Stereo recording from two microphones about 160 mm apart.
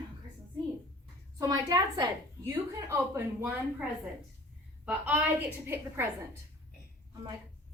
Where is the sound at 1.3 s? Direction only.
20° right (ahead or behind).